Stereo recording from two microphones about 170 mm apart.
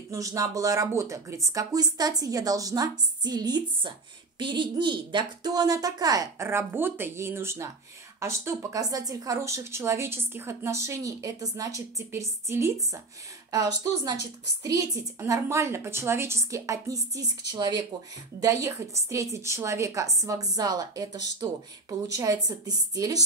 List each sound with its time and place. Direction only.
0.1 s a woman's voice: 20° right (ahead or behind)